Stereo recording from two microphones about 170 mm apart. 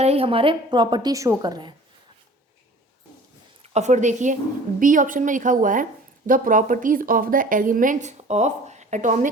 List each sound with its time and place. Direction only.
0.0 s a woman's voice: 35° right (ahead or behind)
3.6 s a woman's voice: 40° right (ahead or behind)